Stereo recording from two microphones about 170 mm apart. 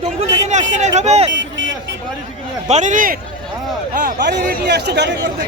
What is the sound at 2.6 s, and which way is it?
Speech, 45° right (ahead or behind).